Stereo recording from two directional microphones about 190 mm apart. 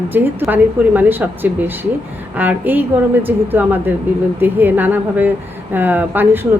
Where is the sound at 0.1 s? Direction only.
10° right (ahead or behind).